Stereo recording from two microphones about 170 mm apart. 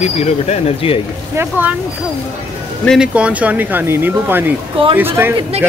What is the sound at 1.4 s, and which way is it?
Speech, 10° right (ahead or behind).